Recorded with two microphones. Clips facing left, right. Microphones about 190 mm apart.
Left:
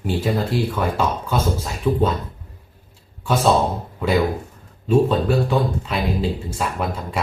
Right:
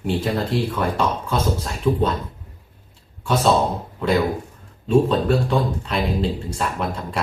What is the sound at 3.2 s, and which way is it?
Speech, 5° left (ahead or behind).